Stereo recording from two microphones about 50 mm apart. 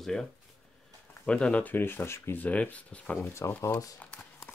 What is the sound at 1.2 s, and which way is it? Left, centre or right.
Speech, left.